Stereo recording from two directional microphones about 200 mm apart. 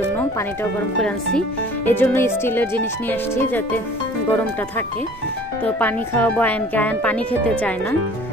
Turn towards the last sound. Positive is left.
turn(degrees=5)  # may be behind; listen again after turning